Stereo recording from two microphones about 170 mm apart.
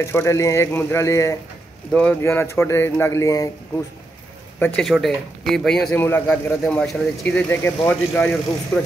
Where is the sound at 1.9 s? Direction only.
5° left (ahead or behind).